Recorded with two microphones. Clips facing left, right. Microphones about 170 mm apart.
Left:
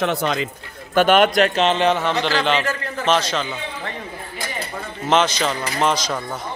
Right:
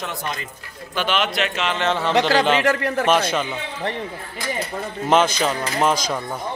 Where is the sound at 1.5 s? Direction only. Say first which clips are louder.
Left 6 dB; 30° left (ahead or behind).